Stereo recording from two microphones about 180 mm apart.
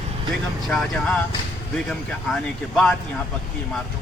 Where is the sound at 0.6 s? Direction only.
Centre (ahead or behind).